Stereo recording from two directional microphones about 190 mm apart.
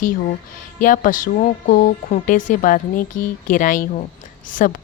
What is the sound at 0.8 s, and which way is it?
Speech, 45° left (ahead or behind).